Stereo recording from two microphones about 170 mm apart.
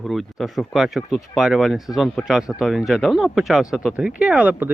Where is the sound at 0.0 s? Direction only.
Centre (ahead or behind).